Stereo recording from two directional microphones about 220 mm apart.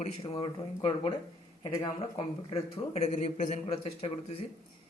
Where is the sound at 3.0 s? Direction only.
30° left (ahead or behind).